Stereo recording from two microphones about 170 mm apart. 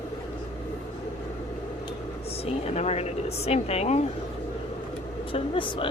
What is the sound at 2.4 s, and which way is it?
Speech, 40° left (ahead or behind).